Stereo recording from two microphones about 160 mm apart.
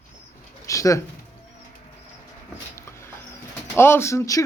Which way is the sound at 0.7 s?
20° left (ahead or behind).